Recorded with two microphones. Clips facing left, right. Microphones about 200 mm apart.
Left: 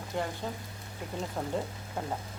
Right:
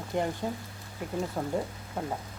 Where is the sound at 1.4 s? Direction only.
10° right (ahead or behind).